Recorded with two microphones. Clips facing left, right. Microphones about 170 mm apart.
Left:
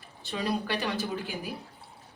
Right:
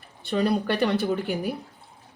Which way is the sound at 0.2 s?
60° right (ahead or behind).